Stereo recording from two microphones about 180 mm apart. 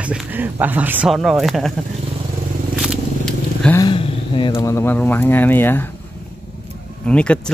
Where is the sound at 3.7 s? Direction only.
25° left (ahead or behind).